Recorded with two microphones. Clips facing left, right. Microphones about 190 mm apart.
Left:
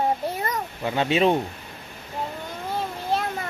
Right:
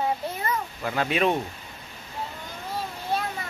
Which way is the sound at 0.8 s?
25° left (ahead or behind).